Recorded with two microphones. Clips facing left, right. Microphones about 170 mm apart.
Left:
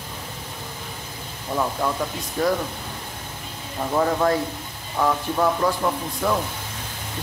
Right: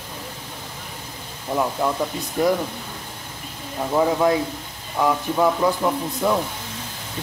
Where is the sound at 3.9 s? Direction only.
5° right (ahead or behind).